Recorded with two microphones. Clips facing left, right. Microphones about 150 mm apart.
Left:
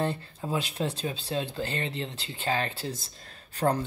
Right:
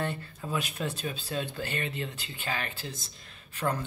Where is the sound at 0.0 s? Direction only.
30° left (ahead or behind).